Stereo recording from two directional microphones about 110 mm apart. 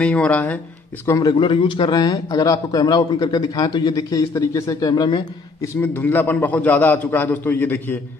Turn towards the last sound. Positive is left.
turn(degrees=15)  # may be behind; listen again after turning